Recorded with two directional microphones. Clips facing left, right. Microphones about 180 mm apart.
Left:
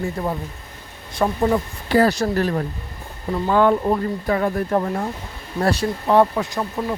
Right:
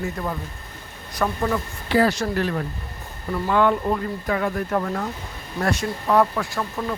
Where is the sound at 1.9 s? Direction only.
40° left (ahead or behind).